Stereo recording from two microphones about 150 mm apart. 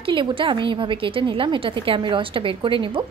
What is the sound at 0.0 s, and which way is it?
A woman's voice, 35° right (ahead or behind).